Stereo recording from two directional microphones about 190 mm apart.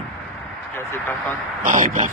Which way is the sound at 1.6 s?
40° right (ahead or behind).